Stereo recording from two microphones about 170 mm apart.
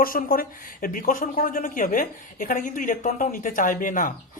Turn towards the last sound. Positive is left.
turn(degrees=50)  # may be behind; listen again after turning